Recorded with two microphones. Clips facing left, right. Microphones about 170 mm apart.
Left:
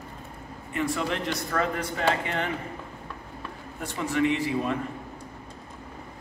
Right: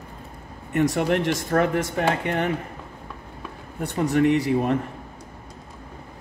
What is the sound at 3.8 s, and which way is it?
Speech, 65° right (ahead or behind).